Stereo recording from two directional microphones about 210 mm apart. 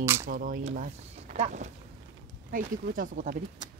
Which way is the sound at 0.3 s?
40° right (ahead or behind).